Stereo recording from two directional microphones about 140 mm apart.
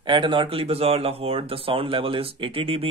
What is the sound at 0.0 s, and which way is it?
Speech, 35° right (ahead or behind).